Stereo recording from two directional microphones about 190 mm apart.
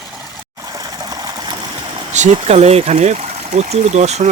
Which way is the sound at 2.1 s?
35° right (ahead or behind).